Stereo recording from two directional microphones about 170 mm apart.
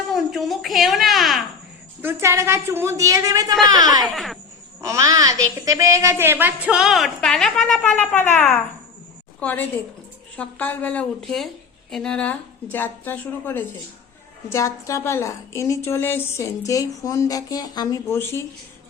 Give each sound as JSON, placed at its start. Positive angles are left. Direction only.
{"t": 0.1, "sound": "a sound", "side_deg": 0}
{"t": 2.0, "sound": "a woman's voice", "side_deg": -15}
{"t": 4.0, "sound": "a woman's voice", "side_deg": 0}
{"t": 4.8, "sound": "a woman's voice", "side_deg": -20}